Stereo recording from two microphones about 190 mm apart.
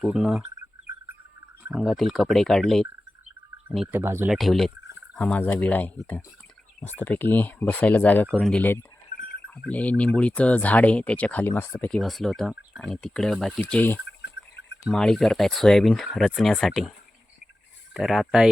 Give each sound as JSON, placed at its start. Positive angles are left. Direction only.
{"t": 0.0, "sound": "speech", "side_deg": -5}
{"t": 1.6, "sound": "speech", "side_deg": 0}
{"t": 4.4, "sound": "speech", "side_deg": 0}
{"t": 14.2, "sound": "a sound", "side_deg": 65}
{"t": 14.8, "sound": "speech", "side_deg": 0}
{"t": 17.9, "sound": "speech", "side_deg": 0}